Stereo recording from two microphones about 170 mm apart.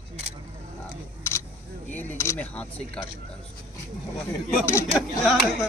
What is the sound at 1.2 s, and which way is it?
Single-lens reflex camera, 15° left (ahead or behind).